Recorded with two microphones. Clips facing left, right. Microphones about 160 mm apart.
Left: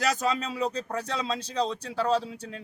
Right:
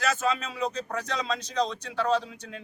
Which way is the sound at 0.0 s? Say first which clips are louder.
Left 1 dB; 35° left (ahead or behind).